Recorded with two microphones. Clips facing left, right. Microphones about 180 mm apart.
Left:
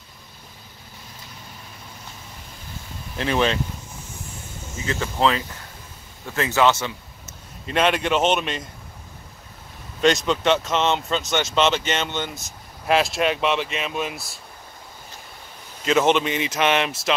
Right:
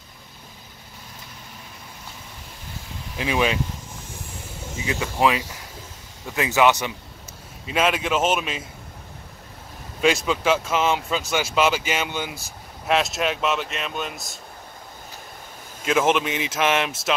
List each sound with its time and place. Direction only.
3.2 s speech: 5° right (ahead or behind)
4.8 s speech: 10° right (ahead or behind)
7.6 s speech: 5° right (ahead or behind)
10.0 s speech: 5° right (ahead or behind)
15.8 s speech: 5° right (ahead or behind)